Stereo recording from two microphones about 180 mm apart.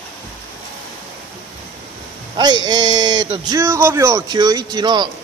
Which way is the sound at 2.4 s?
25° right (ahead or behind).